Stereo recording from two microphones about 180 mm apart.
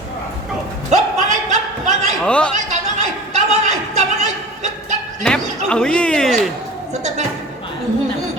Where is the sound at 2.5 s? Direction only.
40° right (ahead or behind).